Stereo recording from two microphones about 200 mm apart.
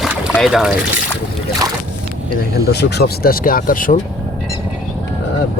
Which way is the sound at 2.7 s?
55° left (ahead or behind).